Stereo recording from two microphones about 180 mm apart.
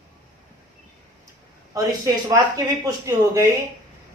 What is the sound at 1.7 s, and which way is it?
Speech, 20° right (ahead or behind).